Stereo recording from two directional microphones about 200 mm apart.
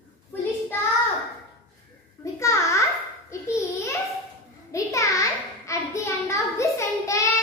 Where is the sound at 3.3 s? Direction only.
15° left (ahead or behind).